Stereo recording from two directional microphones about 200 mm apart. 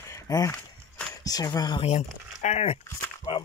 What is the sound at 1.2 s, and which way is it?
Speech, 20° left (ahead or behind).